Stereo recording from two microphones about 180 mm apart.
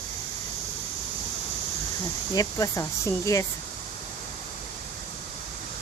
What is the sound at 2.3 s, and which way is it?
Speech, 20° left (ahead or behind).